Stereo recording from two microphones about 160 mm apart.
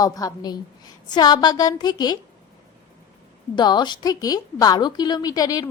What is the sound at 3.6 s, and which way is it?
A woman's voice, 30° left (ahead or behind).